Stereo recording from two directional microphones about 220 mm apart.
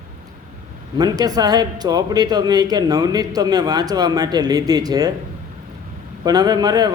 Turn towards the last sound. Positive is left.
turn(degrees=-20)  # may be behind; listen again after turning